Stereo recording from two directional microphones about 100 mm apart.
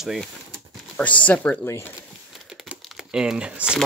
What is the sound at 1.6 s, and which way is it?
Speech, 30° left (ahead or behind).